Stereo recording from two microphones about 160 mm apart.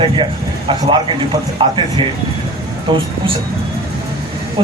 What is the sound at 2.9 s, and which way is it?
Speech, 30° right (ahead or behind).